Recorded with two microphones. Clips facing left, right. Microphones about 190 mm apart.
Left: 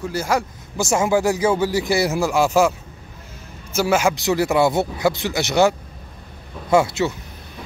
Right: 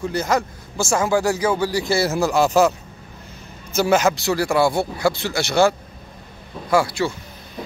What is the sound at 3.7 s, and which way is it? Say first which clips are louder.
Speech: right 1 dB; 10° left (ahead or behind).